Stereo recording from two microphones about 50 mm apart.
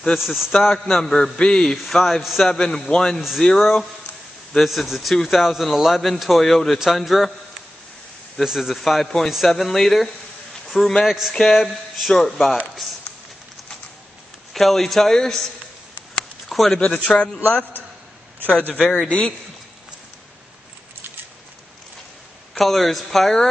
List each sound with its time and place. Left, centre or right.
0.2 s a man's voice: centre
8.4 s speech: centre
11.1 s speech: centre
14.5 s speech: centre
17.1 s a man's voice: centre
18.6 s a man's voice: left
22.5 s speech: centre